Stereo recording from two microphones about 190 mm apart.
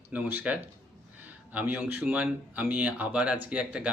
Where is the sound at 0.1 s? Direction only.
10° right (ahead or behind).